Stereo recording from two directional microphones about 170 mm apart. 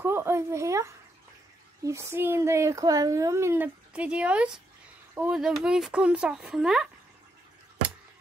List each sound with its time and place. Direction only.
0.0 s speech: 15° right (ahead or behind)